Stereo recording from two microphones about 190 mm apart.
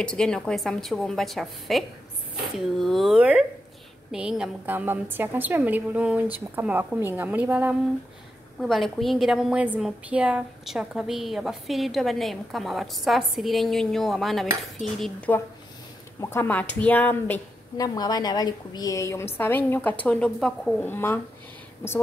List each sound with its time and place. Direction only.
0.0 s a woman's voice: 5° left (ahead or behind)
17.7 s a woman's voice: 20° left (ahead or behind)